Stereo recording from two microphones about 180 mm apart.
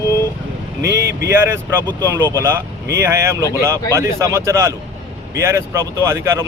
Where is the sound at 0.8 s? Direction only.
70° right (ahead or behind).